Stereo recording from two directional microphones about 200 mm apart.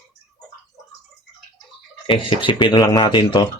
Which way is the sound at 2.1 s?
25° left (ahead or behind).